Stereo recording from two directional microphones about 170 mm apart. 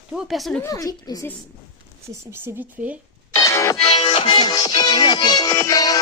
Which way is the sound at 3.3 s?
20° left (ahead or behind).